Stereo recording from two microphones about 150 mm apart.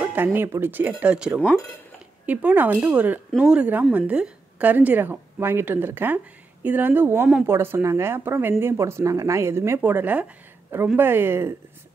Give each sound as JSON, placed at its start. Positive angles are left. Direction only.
{"t": 0.0, "sound": "a woman's voice", "side_deg": -10}